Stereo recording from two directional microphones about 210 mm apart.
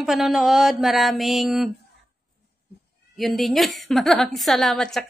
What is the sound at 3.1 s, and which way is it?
Speech, centre (ahead or behind).